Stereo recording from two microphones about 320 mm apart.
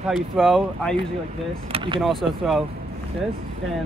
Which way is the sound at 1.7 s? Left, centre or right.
Centre.